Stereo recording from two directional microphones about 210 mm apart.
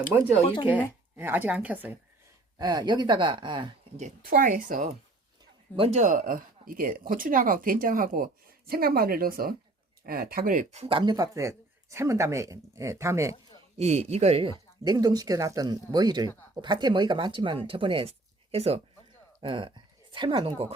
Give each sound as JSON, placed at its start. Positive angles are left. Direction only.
{"t": 0.4, "sound": "speech", "side_deg": 25}
{"t": 0.7, "sound": "speech", "side_deg": -10}
{"t": 2.6, "sound": "speech", "side_deg": -20}
{"t": 3.9, "sound": "speech", "side_deg": -40}
{"t": 13.7, "sound": "speech", "side_deg": -30}
{"t": 14.8, "sound": "speech", "side_deg": -20}